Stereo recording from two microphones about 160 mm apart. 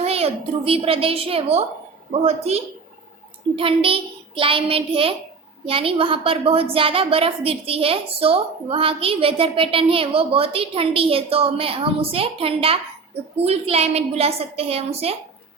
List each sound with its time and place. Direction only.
0.0 s a woman's voice: 40° right (ahead or behind)